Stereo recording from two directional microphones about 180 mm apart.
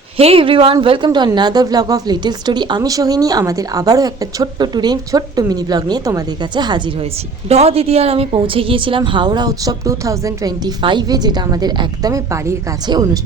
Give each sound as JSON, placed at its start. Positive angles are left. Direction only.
{"t": 0.2, "sound": "a woman's voice", "side_deg": -30}